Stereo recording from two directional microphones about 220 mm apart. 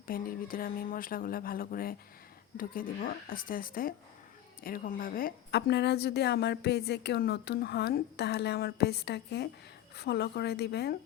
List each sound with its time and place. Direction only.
0.1 s a woman's voice: 40° left (ahead or behind)